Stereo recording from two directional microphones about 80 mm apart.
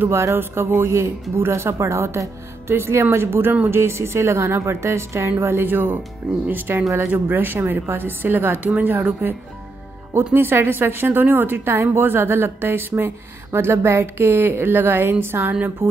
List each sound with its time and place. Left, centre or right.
0.0 s a woman's voice: right